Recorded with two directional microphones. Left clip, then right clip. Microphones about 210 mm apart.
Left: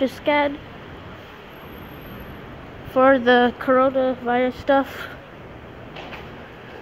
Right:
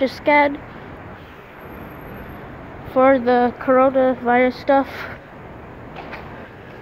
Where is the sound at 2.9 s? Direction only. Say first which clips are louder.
Right 1 dB; 10° left (ahead or behind).